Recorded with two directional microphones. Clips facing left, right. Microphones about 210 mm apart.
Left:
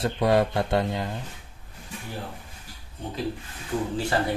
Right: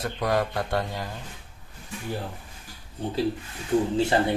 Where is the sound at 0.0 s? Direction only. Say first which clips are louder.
Left 4 dB; 25° left (ahead or behind).